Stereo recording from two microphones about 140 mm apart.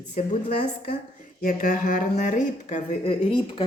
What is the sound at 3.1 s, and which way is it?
Speech, 40° left (ahead or behind).